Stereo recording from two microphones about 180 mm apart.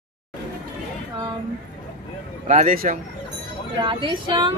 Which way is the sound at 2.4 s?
45° right (ahead or behind).